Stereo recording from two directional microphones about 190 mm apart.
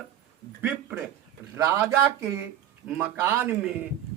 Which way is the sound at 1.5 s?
15° right (ahead or behind).